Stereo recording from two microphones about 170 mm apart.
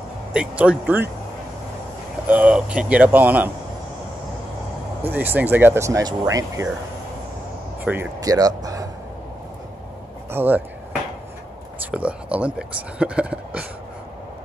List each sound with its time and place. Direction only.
0.3 s speech: 5° right (ahead or behind)
2.2 s speech: 10° right (ahead or behind)
5.1 s speech: 10° right (ahead or behind)
7.8 s speech: 10° right (ahead or behind)
8.2 s speech: 20° right (ahead or behind)
10.3 s speech: 10° right (ahead or behind)
11.9 s speech: 5° right (ahead or behind)